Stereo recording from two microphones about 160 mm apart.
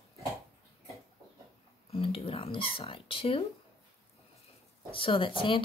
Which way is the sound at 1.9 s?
35° left (ahead or behind).